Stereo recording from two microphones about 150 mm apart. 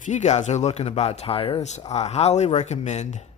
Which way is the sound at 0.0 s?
50° left (ahead or behind).